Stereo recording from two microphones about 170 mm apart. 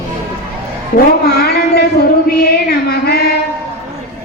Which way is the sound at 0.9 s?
65° left (ahead or behind).